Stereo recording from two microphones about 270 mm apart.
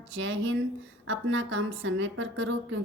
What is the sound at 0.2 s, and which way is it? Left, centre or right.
A woman's voice, right.